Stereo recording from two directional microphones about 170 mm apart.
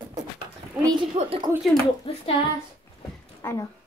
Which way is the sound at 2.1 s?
30° left (ahead or behind).